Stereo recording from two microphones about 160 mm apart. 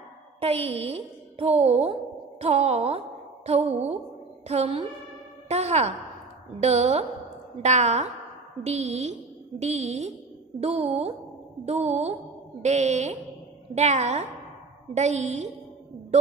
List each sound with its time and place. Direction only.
0.4 s speech: 40° right (ahead or behind)